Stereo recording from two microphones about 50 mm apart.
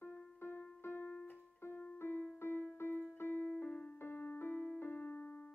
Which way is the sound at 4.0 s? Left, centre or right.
Left.